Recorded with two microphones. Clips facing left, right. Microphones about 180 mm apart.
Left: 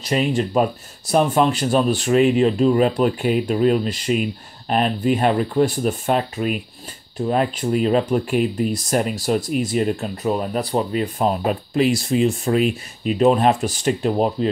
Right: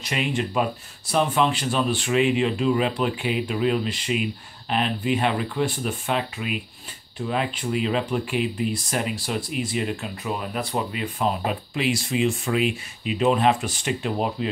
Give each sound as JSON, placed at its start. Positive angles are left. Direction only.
{"t": 0.0, "sound": "speech", "side_deg": 40}